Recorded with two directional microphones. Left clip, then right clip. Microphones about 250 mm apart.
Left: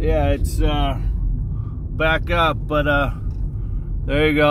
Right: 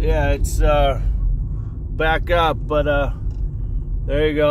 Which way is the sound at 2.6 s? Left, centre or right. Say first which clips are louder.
Even; centre.